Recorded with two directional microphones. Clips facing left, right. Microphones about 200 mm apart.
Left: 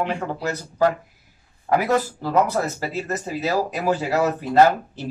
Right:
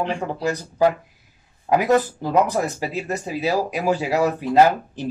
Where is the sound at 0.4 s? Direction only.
15° right (ahead or behind).